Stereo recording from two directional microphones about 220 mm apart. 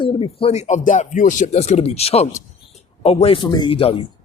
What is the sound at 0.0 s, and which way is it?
Speech, 25° left (ahead or behind).